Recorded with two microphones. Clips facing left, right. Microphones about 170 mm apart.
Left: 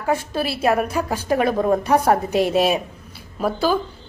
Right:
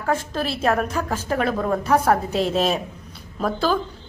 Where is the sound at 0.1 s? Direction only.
10° left (ahead or behind).